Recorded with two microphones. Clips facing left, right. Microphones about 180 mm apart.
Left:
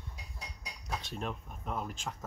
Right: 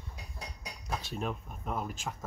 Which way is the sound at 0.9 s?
5° right (ahead or behind).